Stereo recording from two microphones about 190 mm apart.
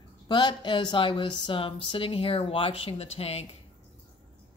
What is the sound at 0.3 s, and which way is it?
Speech, 25° left (ahead or behind).